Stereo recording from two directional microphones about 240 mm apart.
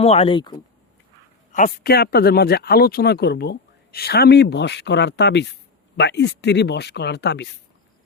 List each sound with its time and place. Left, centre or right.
0.0 s speech: left
1.5 s speech: left